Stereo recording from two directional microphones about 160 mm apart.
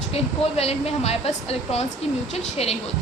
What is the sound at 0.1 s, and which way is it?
A woman's voice, 40° left (ahead or behind).